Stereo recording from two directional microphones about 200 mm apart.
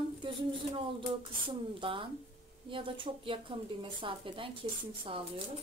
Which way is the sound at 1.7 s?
25° right (ahead or behind).